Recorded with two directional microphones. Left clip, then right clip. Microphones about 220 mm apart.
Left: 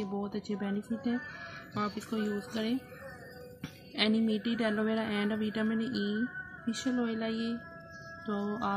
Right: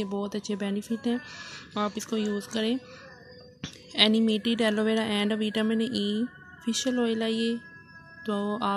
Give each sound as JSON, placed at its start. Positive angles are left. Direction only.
{"t": 0.0, "sound": "a woman's voice", "side_deg": -40}